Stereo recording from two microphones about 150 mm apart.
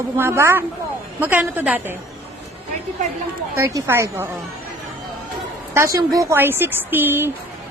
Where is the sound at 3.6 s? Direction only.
20° right (ahead or behind).